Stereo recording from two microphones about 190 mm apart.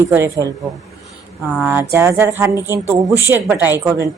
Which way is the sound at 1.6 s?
10° right (ahead or behind).